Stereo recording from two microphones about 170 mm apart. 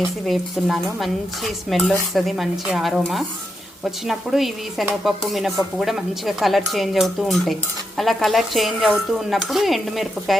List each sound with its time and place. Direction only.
0.3 s speech: centre (ahead or behind)